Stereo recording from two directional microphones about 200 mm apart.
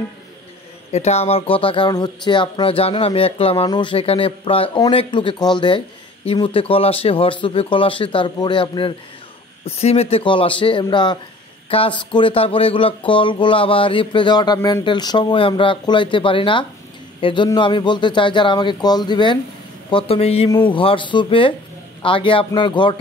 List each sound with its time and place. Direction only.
0.9 s speech: 30° left (ahead or behind)